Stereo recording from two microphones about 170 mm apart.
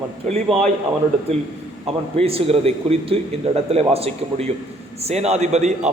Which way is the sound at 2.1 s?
35° right (ahead or behind).